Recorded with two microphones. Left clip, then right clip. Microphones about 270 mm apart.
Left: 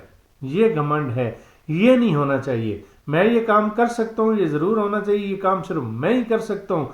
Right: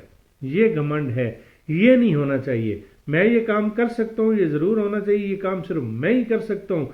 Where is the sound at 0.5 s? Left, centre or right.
Left.